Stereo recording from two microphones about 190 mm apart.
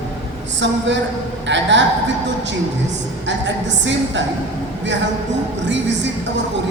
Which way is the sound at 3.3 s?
70° right (ahead or behind).